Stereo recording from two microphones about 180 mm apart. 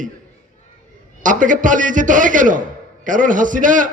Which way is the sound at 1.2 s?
45° right (ahead or behind).